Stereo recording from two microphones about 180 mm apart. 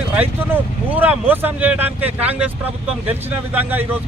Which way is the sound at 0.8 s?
10° right (ahead or behind).